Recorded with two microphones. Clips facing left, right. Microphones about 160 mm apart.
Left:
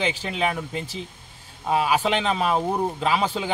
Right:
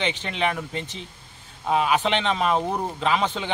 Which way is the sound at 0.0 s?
5° left (ahead or behind).